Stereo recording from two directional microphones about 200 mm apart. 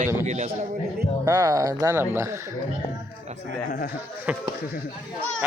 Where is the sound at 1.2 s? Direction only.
15° right (ahead or behind).